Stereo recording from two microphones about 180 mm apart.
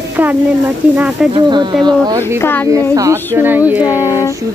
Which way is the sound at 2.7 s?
20° right (ahead or behind).